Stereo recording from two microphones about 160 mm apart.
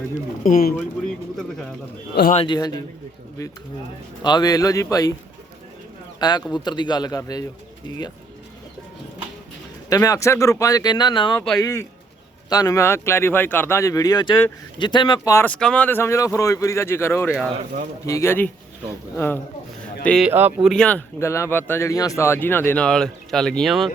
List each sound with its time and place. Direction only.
0.4 s speech: 60° left (ahead or behind)
0.8 s speech: centre (ahead or behind)
2.3 s a man's voice: 35° left (ahead or behind)
2.6 s speech: 25° left (ahead or behind)
4.2 s speech: 25° left (ahead or behind)
6.1 s speech: 25° left (ahead or behind)
9.9 s speech: 20° left (ahead or behind)
11.3 s speech: 5° left (ahead or behind)
11.6 s speech: 15° left (ahead or behind)
15.4 s speech: 5° left (ahead or behind)
20.1 s speech: centre (ahead or behind)
20.3 s speech: 15° right (ahead or behind)
20.7 s speech: 5° left (ahead or behind)